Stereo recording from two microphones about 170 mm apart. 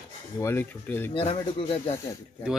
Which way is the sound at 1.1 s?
30° left (ahead or behind).